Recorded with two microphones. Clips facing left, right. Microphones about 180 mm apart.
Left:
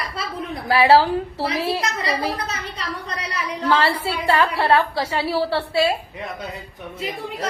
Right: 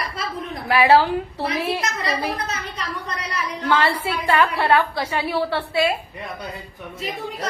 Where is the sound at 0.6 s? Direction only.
30° left (ahead or behind).